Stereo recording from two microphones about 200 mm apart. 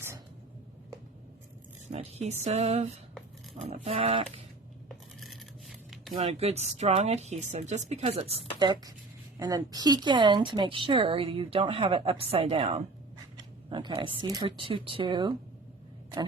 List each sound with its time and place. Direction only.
1.9 s speech: 30° right (ahead or behind)
5.2 s crumpling: centre (ahead or behind)
6.1 s speech: 30° right (ahead or behind)